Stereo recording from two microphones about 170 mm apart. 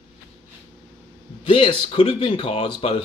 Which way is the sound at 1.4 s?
30° left (ahead or behind).